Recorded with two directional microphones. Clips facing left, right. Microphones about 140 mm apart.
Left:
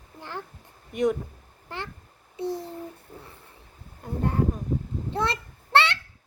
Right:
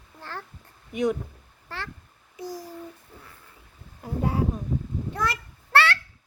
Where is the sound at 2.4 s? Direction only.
25° left (ahead or behind).